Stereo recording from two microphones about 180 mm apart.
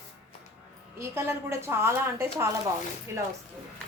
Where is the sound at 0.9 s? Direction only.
15° right (ahead or behind).